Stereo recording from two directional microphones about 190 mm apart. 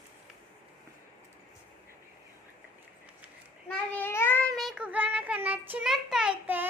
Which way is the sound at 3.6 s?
10° left (ahead or behind).